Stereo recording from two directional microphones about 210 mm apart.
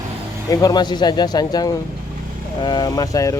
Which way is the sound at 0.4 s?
15° left (ahead or behind).